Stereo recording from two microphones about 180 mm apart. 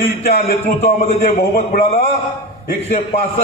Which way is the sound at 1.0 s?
40° left (ahead or behind).